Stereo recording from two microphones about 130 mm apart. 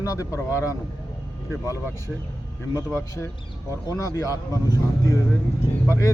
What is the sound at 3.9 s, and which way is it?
Speech, 25° left (ahead or behind).